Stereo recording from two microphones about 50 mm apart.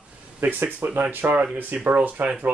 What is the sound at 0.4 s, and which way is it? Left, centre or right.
Speech, right.